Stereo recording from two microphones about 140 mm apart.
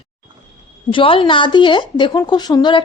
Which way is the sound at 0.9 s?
40° left (ahead or behind).